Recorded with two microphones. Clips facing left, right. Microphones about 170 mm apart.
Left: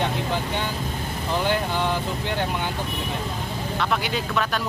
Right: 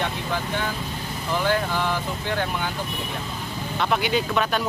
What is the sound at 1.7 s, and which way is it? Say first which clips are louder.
Speech: left 1 dB; 20° left (ahead or behind).